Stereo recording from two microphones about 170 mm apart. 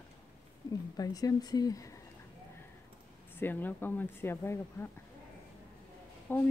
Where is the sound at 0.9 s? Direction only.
20° left (ahead or behind).